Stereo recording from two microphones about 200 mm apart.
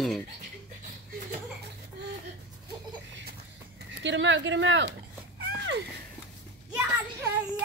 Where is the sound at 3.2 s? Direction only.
50° right (ahead or behind).